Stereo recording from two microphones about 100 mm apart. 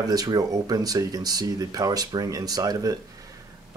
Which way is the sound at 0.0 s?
40° right (ahead or behind).